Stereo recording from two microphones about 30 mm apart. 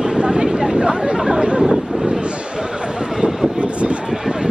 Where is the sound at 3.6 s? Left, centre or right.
Right.